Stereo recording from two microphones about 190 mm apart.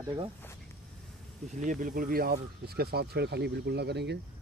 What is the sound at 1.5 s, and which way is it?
Speech, 40° right (ahead or behind).